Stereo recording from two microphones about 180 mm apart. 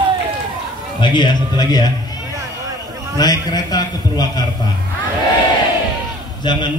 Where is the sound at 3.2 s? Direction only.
20° left (ahead or behind).